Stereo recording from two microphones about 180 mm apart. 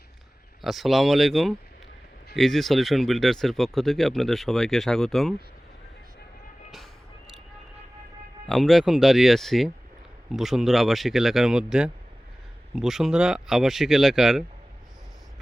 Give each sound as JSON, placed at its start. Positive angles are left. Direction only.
{"t": 0.6, "sound": "speech", "side_deg": 0}
{"t": 8.4, "sound": "speech", "side_deg": 0}